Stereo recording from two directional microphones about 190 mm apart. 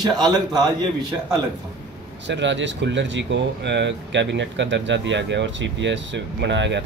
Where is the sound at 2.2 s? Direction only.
70° right (ahead or behind).